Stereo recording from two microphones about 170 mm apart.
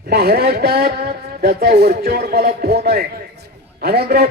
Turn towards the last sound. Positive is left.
turn(degrees=-65)  # may be behind; listen again after turning